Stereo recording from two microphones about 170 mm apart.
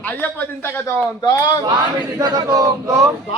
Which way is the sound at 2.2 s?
25° right (ahead or behind).